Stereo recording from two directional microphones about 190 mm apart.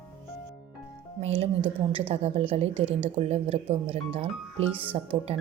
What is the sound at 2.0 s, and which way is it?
Speech, 30° right (ahead or behind).